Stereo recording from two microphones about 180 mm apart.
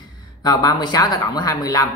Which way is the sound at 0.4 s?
20° left (ahead or behind).